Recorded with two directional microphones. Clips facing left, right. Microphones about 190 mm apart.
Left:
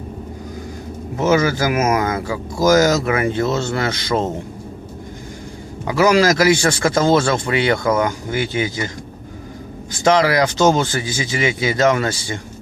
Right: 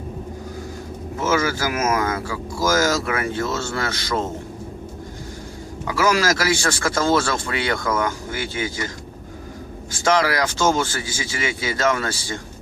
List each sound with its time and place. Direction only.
1.1 s speech: 20° left (ahead or behind)
5.9 s speech: 20° left (ahead or behind)
10.0 s speech: 20° left (ahead or behind)